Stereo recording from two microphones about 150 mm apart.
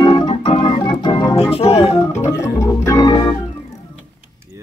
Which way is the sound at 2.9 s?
25° left (ahead or behind).